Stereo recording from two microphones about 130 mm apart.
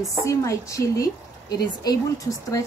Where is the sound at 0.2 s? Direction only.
25° left (ahead or behind).